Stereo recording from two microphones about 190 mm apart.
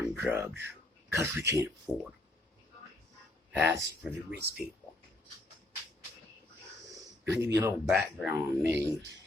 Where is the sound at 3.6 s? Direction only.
15° right (ahead or behind).